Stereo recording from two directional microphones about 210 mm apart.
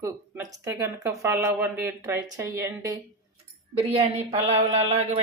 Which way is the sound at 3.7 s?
30° right (ahead or behind).